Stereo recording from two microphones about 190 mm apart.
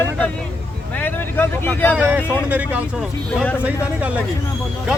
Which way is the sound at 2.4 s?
10° right (ahead or behind).